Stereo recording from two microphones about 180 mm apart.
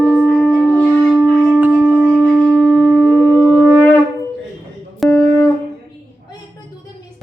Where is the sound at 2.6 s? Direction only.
5° left (ahead or behind).